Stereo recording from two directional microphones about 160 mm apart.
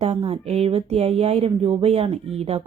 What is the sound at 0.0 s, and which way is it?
Speech, 40° right (ahead or behind).